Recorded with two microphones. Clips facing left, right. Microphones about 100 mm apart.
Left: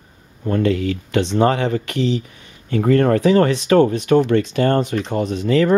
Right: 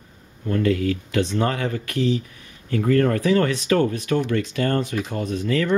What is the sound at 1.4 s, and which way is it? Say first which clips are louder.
Speech: left 7 dB; 65° left (ahead or behind).